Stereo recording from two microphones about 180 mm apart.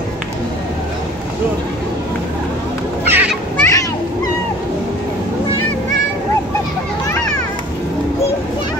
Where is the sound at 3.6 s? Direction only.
15° left (ahead or behind).